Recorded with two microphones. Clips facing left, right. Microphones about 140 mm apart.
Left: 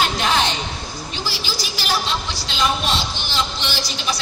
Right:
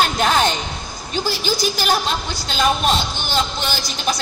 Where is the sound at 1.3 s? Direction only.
50° right (ahead or behind).